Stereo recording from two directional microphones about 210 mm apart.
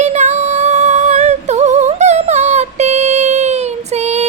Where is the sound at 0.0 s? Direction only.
35° right (ahead or behind).